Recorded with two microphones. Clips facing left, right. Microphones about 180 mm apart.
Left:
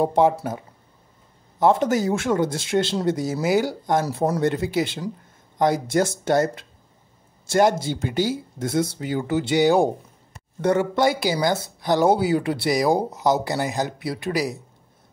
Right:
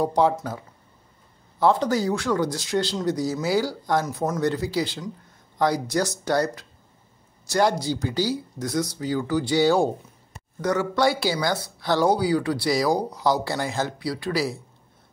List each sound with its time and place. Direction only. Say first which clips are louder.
0.0 s speech: left 2 dB; 20° left (ahead or behind)
1.6 s speech: left 2 dB; 20° left (ahead or behind)
4.0 s speech: left 3 dB; 30° left (ahead or behind)